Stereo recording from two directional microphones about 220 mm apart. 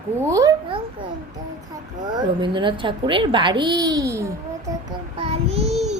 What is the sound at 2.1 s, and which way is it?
A child's voice, 20° right (ahead or behind).